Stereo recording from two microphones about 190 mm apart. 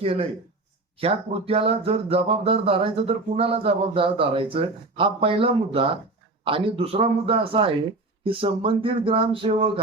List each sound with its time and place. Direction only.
0.0 s speech: 30° right (ahead or behind)